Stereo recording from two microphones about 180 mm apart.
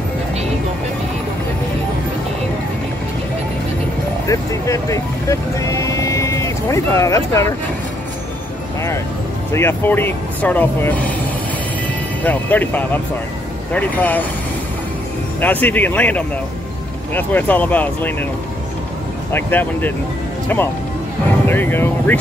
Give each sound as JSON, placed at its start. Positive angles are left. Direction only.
{"t": 4.3, "sound": "speech", "side_deg": 15}
{"t": 9.5, "sound": "speech", "side_deg": 15}
{"t": 12.2, "sound": "speech", "side_deg": 10}
{"t": 15.4, "sound": "speech", "side_deg": 10}
{"t": 19.3, "sound": "speech", "side_deg": 10}